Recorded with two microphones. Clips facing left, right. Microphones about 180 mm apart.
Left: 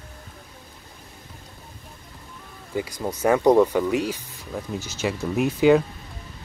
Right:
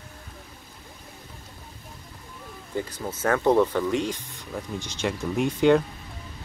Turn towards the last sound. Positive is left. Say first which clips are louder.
# left 2 dB
turn(degrees=5)  # may be behind; listen again after turning